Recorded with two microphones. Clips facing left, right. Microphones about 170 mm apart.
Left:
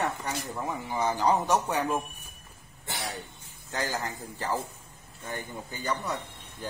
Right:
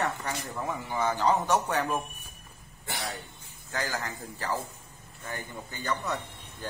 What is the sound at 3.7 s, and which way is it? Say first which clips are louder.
Speech: left 1 dB; 20° left (ahead or behind).